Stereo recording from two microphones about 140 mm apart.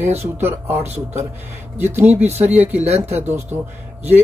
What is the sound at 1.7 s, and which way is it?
Speech, 55° right (ahead or behind).